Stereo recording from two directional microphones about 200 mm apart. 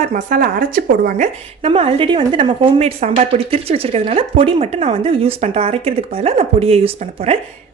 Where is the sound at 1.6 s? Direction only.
30° right (ahead or behind).